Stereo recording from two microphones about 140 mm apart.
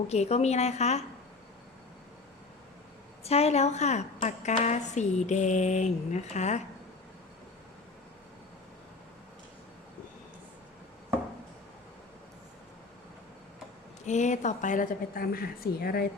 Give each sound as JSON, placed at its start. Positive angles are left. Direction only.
{"t": 0.1, "sound": "a woman's voice", "side_deg": 50}
{"t": 3.2, "sound": "a woman's voice", "side_deg": 50}
{"t": 14.0, "sound": "a woman's voice", "side_deg": 60}